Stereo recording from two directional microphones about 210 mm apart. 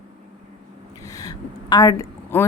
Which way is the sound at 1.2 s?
15° left (ahead or behind).